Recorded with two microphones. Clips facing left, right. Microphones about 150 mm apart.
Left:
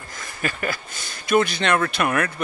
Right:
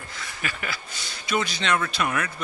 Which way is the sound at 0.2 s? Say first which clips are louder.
Left 6 dB; 45° left (ahead or behind).